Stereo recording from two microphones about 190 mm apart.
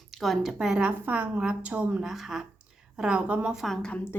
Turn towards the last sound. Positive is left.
turn(degrees=5)  # may be behind; listen again after turning